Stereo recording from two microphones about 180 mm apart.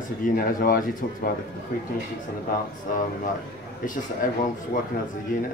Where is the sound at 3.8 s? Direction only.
45° left (ahead or behind).